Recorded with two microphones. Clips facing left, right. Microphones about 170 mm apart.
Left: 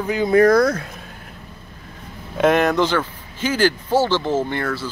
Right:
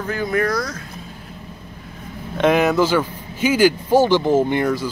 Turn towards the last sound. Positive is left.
turn(degrees=-15)  # may be behind; listen again after turning